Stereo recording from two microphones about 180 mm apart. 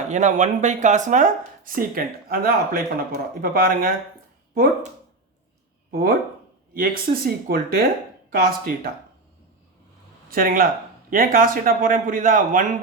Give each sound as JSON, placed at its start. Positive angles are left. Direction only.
{"t": 0.1, "sound": "speech", "side_deg": -40}
{"t": 5.9, "sound": "speech", "side_deg": -55}
{"t": 10.2, "sound": "speech", "side_deg": -55}